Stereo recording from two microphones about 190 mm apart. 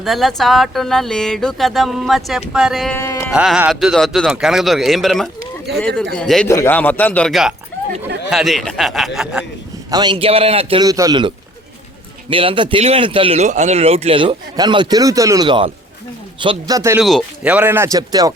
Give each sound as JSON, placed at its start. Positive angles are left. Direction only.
{"t": 0.0, "sound": "speech", "side_deg": 0}
{"t": 3.0, "sound": "music", "side_deg": 15}
{"t": 3.2, "sound": "a man's voice", "side_deg": 0}
{"t": 9.9, "sound": "a man's voice", "side_deg": -25}
{"t": 12.3, "sound": "a man's voice", "side_deg": -30}
{"t": 17.0, "sound": "speech", "side_deg": 0}